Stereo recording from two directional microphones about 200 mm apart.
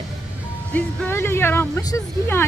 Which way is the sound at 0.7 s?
10° left (ahead or behind).